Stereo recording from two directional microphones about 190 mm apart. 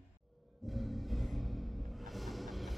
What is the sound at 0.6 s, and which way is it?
Music, centre (ahead or behind).